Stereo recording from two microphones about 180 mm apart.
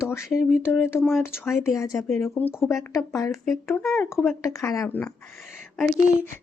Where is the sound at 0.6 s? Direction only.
10° left (ahead or behind).